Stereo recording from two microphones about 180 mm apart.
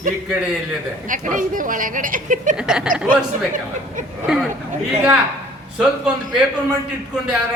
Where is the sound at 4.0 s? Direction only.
45° right (ahead or behind).